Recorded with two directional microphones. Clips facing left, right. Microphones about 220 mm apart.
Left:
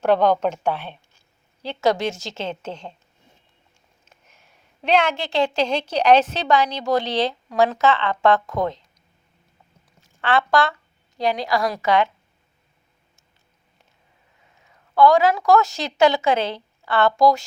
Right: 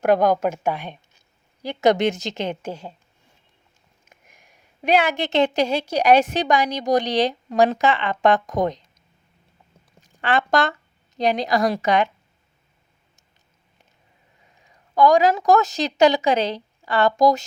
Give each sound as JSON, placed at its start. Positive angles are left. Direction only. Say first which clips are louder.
{"t": 0.0, "sound": "a woman's voice", "louder": "even", "side_deg": -10}
{"t": 4.0, "sound": "a sound", "louder": "right 2 dB", "side_deg": -15}
{"t": 5.2, "sound": "a woman's voice", "louder": "right 2 dB", "side_deg": -20}
{"t": 14.6, "sound": "a woman's voice", "louder": "left 1 dB", "side_deg": -15}